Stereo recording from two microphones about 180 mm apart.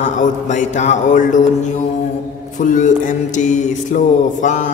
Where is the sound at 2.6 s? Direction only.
45° left (ahead or behind).